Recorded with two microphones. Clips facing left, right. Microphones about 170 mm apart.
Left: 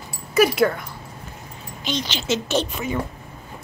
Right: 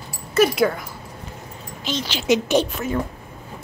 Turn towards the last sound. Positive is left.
turn(degrees=0)  # may be behind; listen again after turning